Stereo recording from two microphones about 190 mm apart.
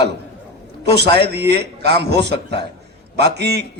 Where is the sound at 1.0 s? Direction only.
25° left (ahead or behind).